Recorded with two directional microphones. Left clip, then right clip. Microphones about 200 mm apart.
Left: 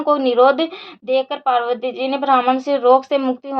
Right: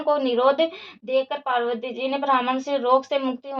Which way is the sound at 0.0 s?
35° left (ahead or behind).